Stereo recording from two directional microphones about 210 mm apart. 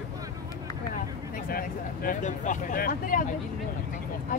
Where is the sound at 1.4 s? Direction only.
45° left (ahead or behind).